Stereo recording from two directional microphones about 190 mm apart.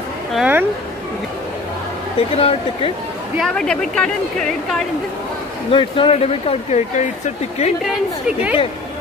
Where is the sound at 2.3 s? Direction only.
30° left (ahead or behind).